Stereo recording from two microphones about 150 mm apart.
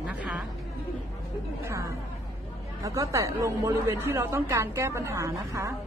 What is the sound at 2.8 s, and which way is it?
A woman's voice, 20° right (ahead or behind).